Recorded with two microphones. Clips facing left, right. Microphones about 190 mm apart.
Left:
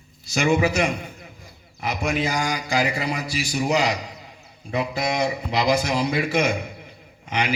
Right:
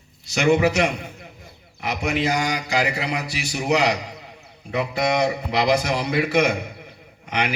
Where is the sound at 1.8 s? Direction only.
65° right (ahead or behind).